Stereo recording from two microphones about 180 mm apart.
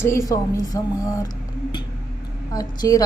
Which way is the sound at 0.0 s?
15° left (ahead or behind).